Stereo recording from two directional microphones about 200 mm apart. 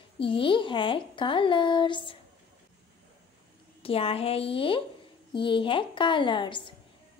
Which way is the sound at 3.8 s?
30° left (ahead or behind).